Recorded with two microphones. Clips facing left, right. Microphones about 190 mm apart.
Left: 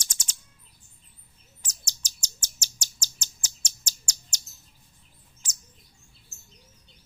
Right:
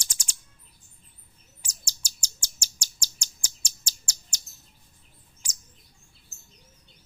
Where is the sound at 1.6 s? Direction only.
10° right (ahead or behind).